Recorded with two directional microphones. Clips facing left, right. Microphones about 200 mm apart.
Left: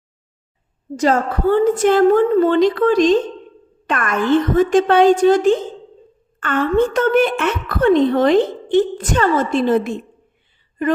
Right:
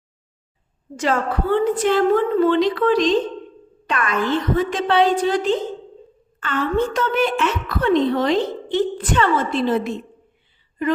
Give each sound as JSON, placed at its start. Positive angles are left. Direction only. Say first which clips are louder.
{"t": 0.9, "sound": "a woman's voice", "louder": "left 4 dB", "side_deg": 40}